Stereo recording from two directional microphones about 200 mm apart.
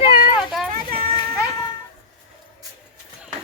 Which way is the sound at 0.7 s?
45° right (ahead or behind).